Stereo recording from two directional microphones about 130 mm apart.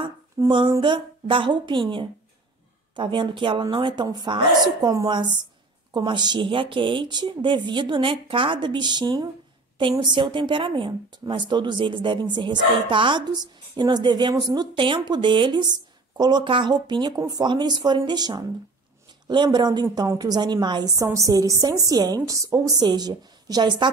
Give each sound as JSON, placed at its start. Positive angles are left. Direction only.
{"t": 0.5, "sound": "a woman's voice", "side_deg": -40}